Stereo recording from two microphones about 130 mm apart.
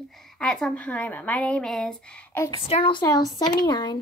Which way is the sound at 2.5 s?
45° left (ahead or behind).